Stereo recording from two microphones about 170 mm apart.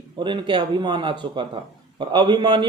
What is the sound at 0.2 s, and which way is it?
Speech, 30° right (ahead or behind).